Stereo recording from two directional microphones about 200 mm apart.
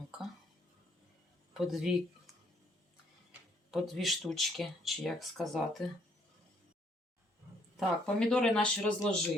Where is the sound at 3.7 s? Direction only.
Centre (ahead or behind).